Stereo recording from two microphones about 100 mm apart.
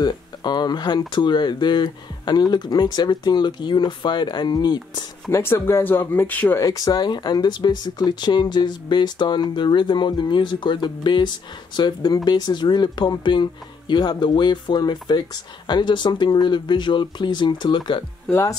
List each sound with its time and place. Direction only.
0.0 s speech: 45° left (ahead or behind)
5.3 s speech: 30° left (ahead or behind)
6.6 s speech: 35° left (ahead or behind)